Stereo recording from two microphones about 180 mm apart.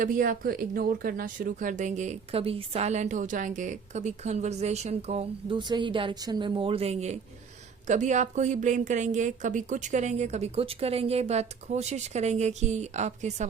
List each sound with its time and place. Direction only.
0.0 s speech: 50° right (ahead or behind)